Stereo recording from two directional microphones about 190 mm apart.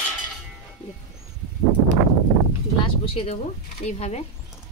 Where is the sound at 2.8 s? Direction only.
30° left (ahead or behind).